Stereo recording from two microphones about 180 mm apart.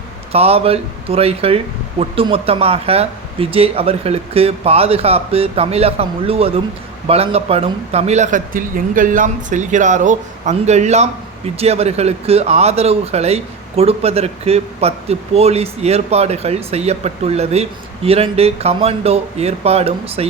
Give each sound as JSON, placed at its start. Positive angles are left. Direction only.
{"t": 0.3, "sound": "speech", "side_deg": -35}